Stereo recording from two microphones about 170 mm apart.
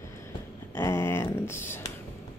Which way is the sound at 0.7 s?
15° left (ahead or behind).